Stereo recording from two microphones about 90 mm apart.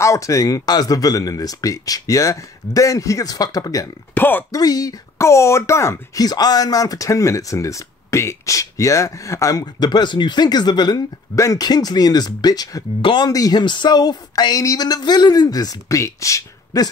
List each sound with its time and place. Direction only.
0.0 s speech: 35° left (ahead or behind)
4.1 s speech: 20° left (ahead or behind)
4.5 s speech: 45° left (ahead or behind)
6.2 s speech: 45° left (ahead or behind)
9.8 s speech: 55° left (ahead or behind)
11.3 s speech: 35° left (ahead or behind)
11.6 s speech: 50° left (ahead or behind)
13.0 s speech: 65° left (ahead or behind)
13.3 s speech: 45° left (ahead or behind)